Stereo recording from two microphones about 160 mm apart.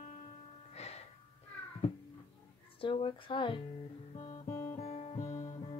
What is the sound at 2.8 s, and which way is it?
Speech, 35° left (ahead or behind).